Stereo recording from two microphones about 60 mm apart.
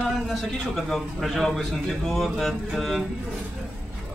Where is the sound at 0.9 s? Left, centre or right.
Centre.